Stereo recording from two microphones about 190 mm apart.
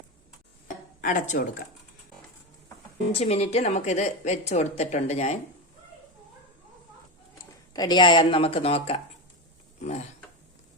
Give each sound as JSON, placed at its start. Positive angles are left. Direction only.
{"t": 1.0, "sound": "speech", "side_deg": 40}
{"t": 3.1, "sound": "speech", "side_deg": 35}
{"t": 7.7, "sound": "speech", "side_deg": 20}